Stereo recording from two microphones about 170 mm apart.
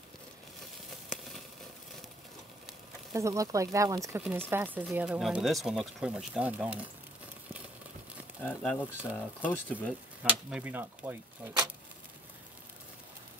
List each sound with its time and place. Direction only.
3.1 s speech: 20° right (ahead or behind)
8.5 s speech: 10° left (ahead or behind)
10.2 s speech: 10° right (ahead or behind)